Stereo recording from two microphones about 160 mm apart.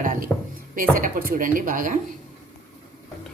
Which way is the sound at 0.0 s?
55° right (ahead or behind).